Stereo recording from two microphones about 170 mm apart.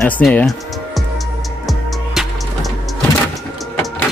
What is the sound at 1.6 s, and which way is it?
Music, centre (ahead or behind).